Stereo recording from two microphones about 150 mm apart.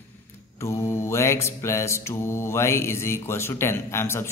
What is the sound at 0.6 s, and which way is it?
A man's voice, 15° left (ahead or behind).